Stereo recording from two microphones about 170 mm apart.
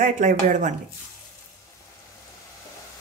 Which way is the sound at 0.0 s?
50° right (ahead or behind).